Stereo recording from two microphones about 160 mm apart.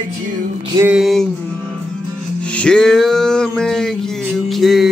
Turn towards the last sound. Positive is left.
turn(degrees=0)  # may be behind; listen again after turning